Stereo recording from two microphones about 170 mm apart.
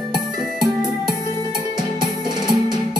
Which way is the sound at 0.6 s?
5° right (ahead or behind).